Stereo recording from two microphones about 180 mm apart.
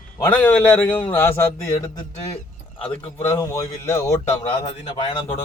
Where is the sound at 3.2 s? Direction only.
20° left (ahead or behind).